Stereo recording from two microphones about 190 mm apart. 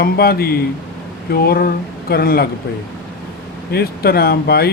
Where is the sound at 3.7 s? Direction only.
55° left (ahead or behind).